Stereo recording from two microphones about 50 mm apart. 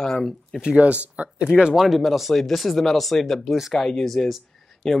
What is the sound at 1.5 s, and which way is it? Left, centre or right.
Speech, centre.